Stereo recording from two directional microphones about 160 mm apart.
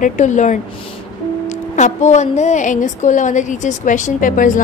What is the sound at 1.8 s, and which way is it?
A woman's voice, 45° left (ahead or behind).